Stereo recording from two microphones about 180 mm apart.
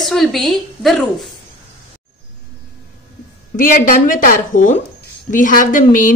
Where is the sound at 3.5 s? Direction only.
50° left (ahead or behind).